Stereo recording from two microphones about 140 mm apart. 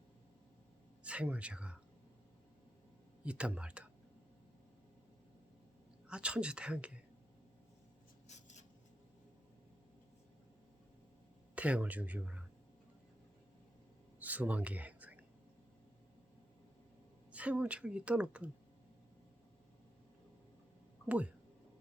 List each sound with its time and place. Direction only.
1.0 s a woman's voice: 10° right (ahead or behind)
3.2 s a woman's voice: 10° right (ahead or behind)
6.1 s a woman's voice: 5° right (ahead or behind)
8.3 s writing: 55° left (ahead or behind)
11.5 s a woman's voice: 10° right (ahead or behind)
14.2 s a sound: 10° right (ahead or behind)
17.3 s a woman's voice: 10° right (ahead or behind)
21.1 s a woman's voice: 10° right (ahead or behind)